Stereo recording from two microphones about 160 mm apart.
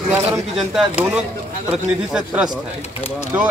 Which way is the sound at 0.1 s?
Centre (ahead or behind).